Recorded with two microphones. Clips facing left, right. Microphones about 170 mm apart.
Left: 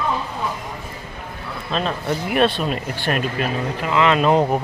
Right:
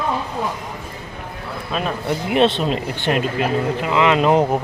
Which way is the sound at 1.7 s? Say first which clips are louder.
Even; 15° right (ahead or behind).